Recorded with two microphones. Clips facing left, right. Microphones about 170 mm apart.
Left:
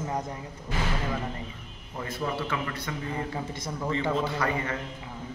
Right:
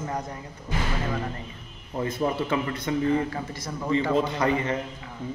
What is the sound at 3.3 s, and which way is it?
Speech, 25° left (ahead or behind).